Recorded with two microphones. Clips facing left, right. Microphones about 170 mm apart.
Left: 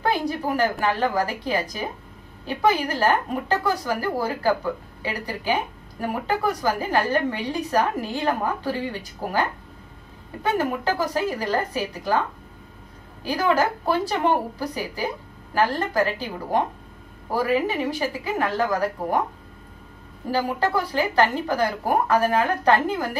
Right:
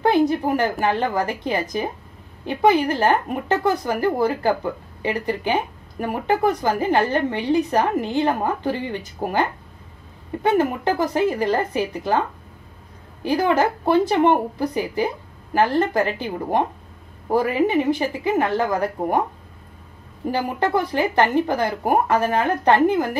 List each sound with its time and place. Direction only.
0.0 s speech: 20° right (ahead or behind)
13.2 s speech: 20° right (ahead or behind)
20.2 s speech: 20° right (ahead or behind)